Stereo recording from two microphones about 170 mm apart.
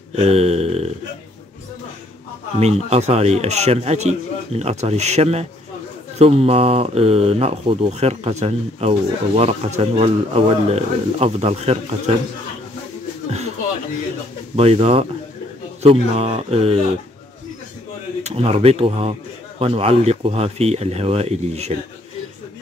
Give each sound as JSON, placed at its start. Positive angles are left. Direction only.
{"t": 0.1, "sound": "a sound", "side_deg": -40}
{"t": 2.6, "sound": "speech", "side_deg": -40}
{"t": 14.5, "sound": "speech", "side_deg": -35}
{"t": 18.2, "sound": "speech", "side_deg": -35}